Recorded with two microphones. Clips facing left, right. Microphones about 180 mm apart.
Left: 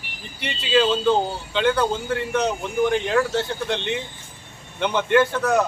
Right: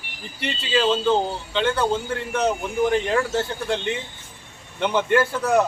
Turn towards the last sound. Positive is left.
turn(degrees=-10)  # may be behind; listen again after turning